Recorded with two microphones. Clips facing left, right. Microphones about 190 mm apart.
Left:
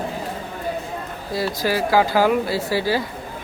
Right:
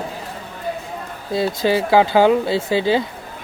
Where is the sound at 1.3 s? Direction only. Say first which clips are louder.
Right 4 dB; 25° right (ahead or behind).